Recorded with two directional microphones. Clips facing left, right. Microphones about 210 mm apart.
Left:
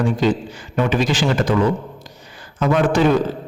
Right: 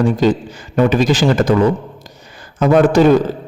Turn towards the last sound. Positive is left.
turn(degrees=-40)  # may be behind; listen again after turning